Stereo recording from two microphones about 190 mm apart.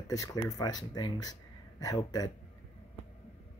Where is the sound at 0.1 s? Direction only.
20° left (ahead or behind).